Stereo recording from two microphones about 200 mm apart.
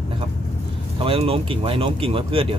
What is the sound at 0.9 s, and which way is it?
Speech, 30° right (ahead or behind).